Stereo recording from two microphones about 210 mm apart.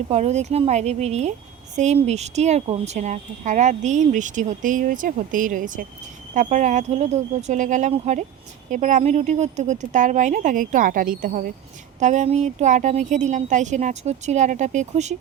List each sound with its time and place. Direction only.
0.1 s a woman's voice: 30° right (ahead or behind)